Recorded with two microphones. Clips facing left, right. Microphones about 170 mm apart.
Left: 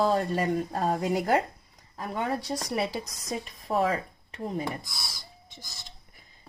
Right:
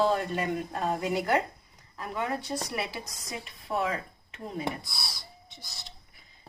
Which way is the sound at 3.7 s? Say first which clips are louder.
Left 4 dB; 40° left (ahead or behind).